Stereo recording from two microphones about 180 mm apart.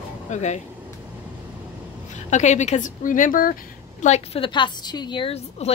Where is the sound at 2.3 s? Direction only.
40° left (ahead or behind).